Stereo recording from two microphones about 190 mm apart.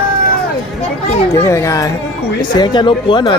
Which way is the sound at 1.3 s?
15° left (ahead or behind).